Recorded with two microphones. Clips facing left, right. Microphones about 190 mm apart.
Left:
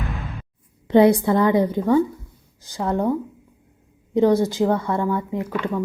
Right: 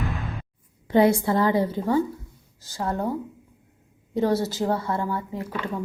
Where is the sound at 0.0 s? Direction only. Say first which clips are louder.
Even; centre (ahead or behind).